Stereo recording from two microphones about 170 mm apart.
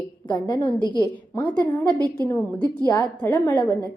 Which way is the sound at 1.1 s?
10° left (ahead or behind).